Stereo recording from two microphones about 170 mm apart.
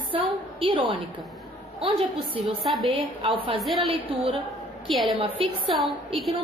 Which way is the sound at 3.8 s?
30° right (ahead or behind).